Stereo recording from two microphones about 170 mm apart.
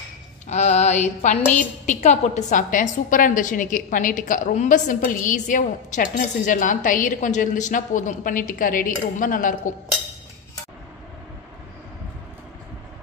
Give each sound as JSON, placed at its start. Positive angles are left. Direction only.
{"t": 0.5, "sound": "music", "side_deg": 40}
{"t": 1.5, "sound": "a woman's voice", "side_deg": 45}